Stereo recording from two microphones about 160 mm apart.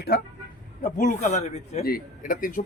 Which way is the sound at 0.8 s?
55° left (ahead or behind).